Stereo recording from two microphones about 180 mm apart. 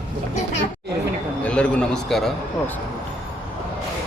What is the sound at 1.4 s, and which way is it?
A man's voice, 5° left (ahead or behind).